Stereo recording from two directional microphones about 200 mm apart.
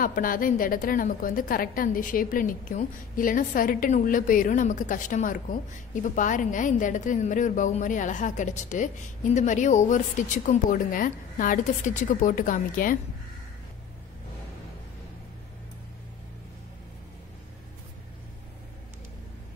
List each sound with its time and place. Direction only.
0.0 s a woman's voice: 45° left (ahead or behind)